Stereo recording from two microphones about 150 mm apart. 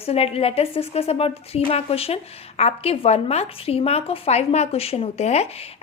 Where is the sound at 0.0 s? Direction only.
40° left (ahead or behind).